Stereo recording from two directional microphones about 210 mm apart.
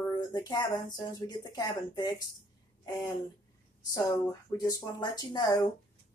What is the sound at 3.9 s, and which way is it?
Speech, 15° left (ahead or behind).